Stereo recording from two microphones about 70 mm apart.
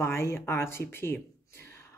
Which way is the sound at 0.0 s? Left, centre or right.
Left.